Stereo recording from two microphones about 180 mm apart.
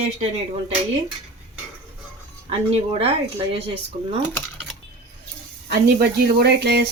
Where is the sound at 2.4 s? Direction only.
35° right (ahead or behind).